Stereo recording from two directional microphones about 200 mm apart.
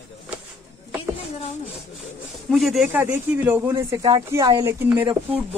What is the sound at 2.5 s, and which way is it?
Speech, centre (ahead or behind).